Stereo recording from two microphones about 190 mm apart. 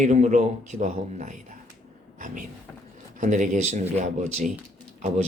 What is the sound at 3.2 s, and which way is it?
Speech, 40° right (ahead or behind).